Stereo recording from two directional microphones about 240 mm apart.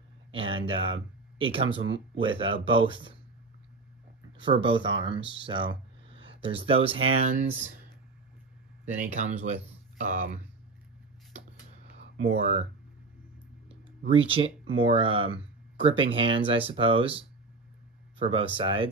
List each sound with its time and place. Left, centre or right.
0.3 s speech: right
4.4 s speech: right
8.8 s speech: right
12.4 s speech: right
13.7 s a sound: right
14.8 s speech: right
18.2 s speech: right